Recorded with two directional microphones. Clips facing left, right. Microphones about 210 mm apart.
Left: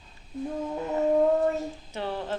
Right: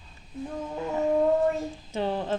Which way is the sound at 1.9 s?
20° right (ahead or behind).